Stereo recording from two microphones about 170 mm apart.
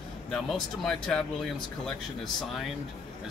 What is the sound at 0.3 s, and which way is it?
Speech, 5° left (ahead or behind).